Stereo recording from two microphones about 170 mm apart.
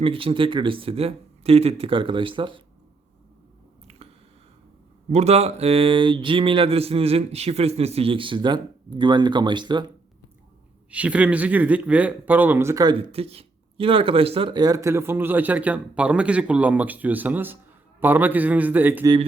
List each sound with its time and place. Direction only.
0.0 s speech: 30° right (ahead or behind)
3.8 s squish: 35° right (ahead or behind)
5.1 s speech: 40° right (ahead or behind)
10.9 s speech: 10° right (ahead or behind)